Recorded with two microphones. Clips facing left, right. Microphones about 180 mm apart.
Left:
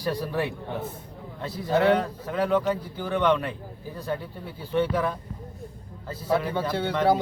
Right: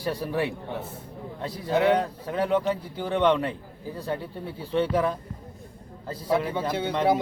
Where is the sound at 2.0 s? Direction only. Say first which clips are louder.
Even; 25° right (ahead or behind).